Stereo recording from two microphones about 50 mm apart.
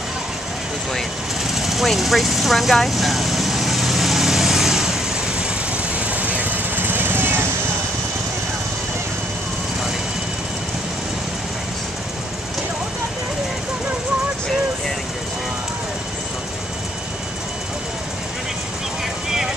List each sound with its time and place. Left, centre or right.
1.5 s vehicle: centre
5.9 s vehicle: right